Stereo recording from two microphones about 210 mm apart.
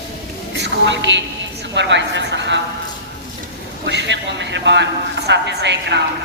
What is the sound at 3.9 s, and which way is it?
A man's voice, 55° right (ahead or behind).